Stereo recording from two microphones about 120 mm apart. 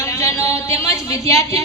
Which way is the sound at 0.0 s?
25° left (ahead or behind).